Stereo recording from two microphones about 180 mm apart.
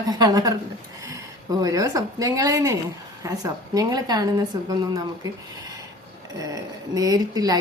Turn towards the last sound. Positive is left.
turn(degrees=-20)  # may be behind; listen again after turning